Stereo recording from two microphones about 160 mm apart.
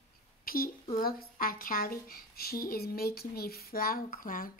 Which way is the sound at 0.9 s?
65° left (ahead or behind).